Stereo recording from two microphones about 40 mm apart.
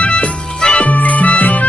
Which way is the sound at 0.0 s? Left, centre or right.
Left.